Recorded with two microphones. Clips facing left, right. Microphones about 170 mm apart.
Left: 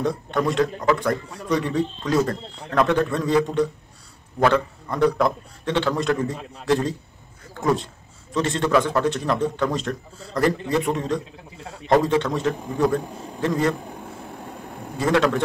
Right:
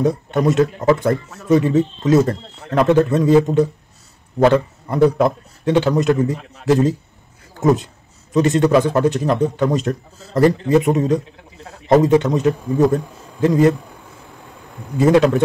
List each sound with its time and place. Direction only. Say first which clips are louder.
0.0 s a man's voice: right 6 dB; 20° right (ahead or behind)
8.3 s a man's voice: right 7 dB; 20° right (ahead or behind)
14.0 s vehicle: left 5 dB; 45° left (ahead or behind)
15.0 s a man's voice: right 7 dB; 20° right (ahead or behind)